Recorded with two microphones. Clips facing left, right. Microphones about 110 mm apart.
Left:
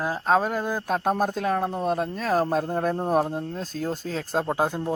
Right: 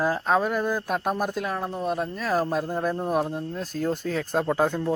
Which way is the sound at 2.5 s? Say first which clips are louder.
Left 2 dB; 30° left (ahead or behind).